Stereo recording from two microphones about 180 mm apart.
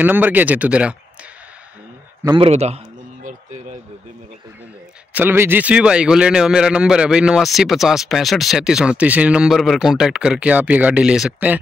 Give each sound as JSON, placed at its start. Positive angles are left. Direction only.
{"t": 0.0, "sound": "speech", "side_deg": -10}
{"t": 2.3, "sound": "a man's voice", "side_deg": -35}
{"t": 5.1, "sound": "a man's voice", "side_deg": -10}